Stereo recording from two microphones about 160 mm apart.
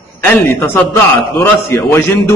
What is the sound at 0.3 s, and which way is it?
A man's voice, 10° left (ahead or behind).